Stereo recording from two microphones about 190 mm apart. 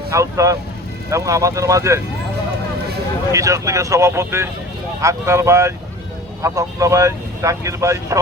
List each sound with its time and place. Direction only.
0.1 s speech: 15° right (ahead or behind)
3.3 s speech: 15° right (ahead or behind)